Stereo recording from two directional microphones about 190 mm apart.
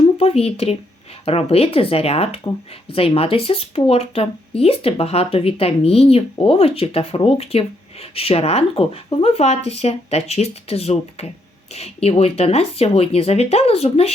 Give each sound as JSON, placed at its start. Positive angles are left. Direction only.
{"t": 0.0, "sound": "speech", "side_deg": 30}